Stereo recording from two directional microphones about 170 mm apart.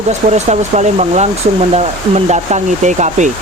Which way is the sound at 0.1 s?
40° right (ahead or behind).